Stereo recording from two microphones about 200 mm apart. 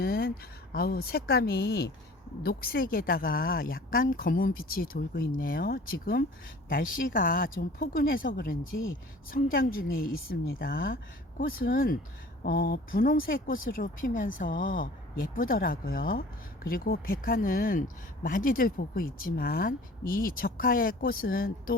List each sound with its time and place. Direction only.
0.0 s speech: 50° left (ahead or behind)